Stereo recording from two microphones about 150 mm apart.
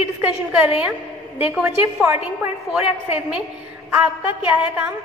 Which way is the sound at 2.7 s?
5° right (ahead or behind).